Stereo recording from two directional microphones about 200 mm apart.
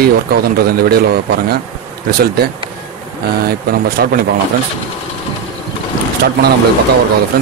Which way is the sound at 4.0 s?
50° right (ahead or behind).